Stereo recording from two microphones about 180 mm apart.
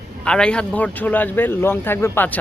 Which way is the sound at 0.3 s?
5° left (ahead or behind).